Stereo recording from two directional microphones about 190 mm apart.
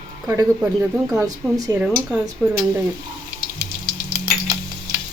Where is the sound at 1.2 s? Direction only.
20° right (ahead or behind).